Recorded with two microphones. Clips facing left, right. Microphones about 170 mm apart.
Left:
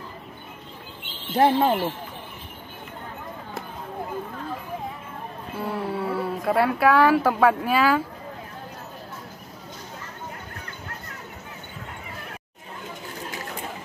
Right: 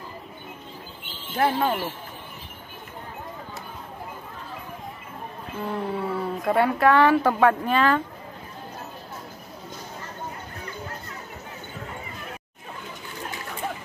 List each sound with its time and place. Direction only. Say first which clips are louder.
1.3 s speech: left 4 dB; 25° left (ahead or behind)
5.6 s speech: even; 5° left (ahead or behind)